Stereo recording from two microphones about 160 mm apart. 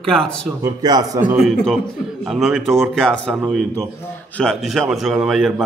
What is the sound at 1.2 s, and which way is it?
A man's voice, 10° right (ahead or behind).